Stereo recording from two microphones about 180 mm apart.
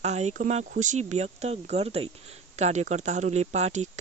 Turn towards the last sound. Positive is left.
turn(degrees=-40)  # may be behind; listen again after turning